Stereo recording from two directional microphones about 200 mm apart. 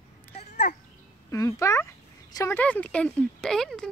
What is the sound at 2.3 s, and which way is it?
Speech, 15° left (ahead or behind).